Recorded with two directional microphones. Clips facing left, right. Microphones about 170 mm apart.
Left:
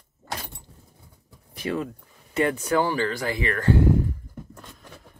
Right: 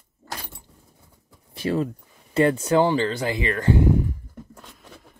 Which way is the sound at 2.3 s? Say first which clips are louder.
Right 4 dB; 30° right (ahead or behind).